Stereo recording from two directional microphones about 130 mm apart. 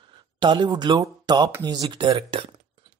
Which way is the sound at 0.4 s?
35° right (ahead or behind).